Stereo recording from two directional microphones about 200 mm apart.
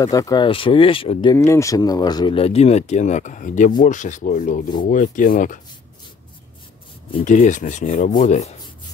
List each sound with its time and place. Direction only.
0.0 s speech: 15° left (ahead or behind)
1.3 s speech: 15° left (ahead or behind); by 3.7 s 40° left (ahead or behind)
3.8 s rub: 40° left (ahead or behind)
7.2 s rub: 40° left (ahead or behind)